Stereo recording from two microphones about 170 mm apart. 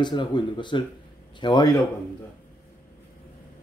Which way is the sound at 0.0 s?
25° left (ahead or behind).